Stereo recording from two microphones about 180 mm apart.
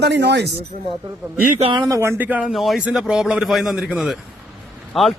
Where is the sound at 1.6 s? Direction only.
30° right (ahead or behind).